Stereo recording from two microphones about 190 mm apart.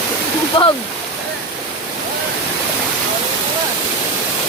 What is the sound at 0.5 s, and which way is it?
Stream, 25° left (ahead or behind).